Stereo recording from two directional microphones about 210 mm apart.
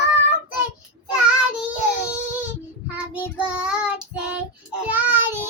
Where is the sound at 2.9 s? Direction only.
5° right (ahead or behind).